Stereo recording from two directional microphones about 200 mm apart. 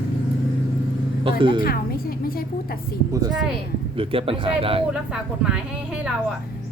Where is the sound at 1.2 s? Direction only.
25° right (ahead or behind).